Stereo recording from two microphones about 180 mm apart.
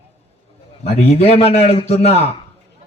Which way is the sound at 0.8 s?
35° left (ahead or behind).